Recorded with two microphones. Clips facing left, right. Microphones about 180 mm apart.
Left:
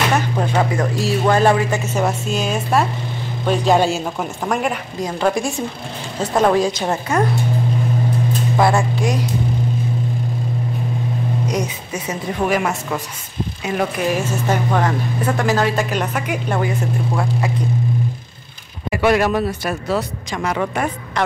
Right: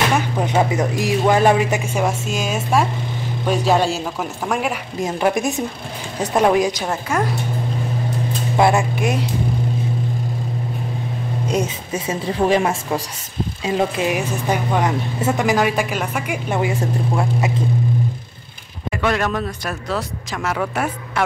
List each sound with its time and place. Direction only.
0.4 s a woman's voice: 15° right (ahead or behind)
5.2 s a woman's voice: 20° right (ahead or behind)
8.5 s speech: 20° right (ahead or behind)
11.4 s a woman's voice: 25° right (ahead or behind)
18.9 s speech: 10° left (ahead or behind); by 21.2 s 5° right (ahead or behind)